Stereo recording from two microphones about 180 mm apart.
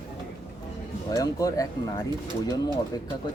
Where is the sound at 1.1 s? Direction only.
20° left (ahead or behind).